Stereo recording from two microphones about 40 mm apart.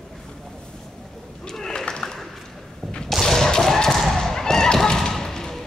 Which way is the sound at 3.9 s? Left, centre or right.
Centre.